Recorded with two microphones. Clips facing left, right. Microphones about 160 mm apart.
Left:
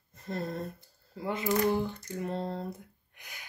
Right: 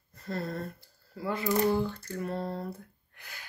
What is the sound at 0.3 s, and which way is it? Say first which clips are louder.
Speech: even; 20° left (ahead or behind).